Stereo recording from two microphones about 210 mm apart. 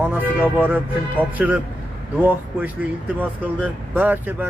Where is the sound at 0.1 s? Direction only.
10° right (ahead or behind).